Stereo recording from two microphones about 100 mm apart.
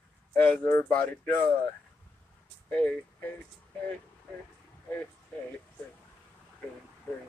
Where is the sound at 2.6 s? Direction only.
15° left (ahead or behind).